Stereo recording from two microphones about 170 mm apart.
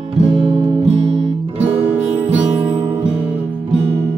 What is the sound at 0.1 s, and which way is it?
Music, 35° right (ahead or behind).